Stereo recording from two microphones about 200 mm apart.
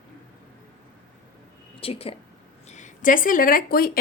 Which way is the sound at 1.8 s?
30° left (ahead or behind).